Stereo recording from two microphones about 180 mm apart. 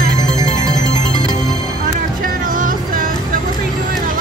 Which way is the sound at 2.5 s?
50° right (ahead or behind).